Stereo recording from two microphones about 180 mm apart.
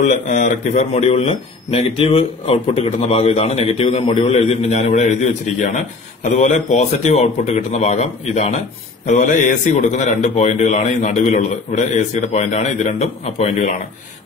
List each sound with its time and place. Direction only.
0.0 s a man's voice: 45° left (ahead or behind)